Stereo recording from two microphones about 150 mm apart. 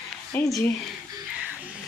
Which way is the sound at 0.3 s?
15° left (ahead or behind).